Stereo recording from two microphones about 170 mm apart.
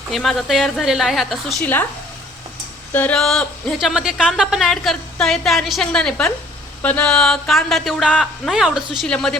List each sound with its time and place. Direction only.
0.1 s a woman's voice: centre (ahead or behind)
2.9 s a woman's voice: 10° left (ahead or behind)